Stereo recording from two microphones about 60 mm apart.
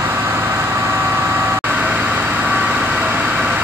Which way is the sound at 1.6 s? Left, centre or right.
Right.